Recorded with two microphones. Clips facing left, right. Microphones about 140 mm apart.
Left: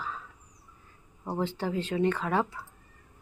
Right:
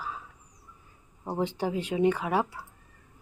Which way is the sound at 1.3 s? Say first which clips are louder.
Right 1 dB; 15° right (ahead or behind).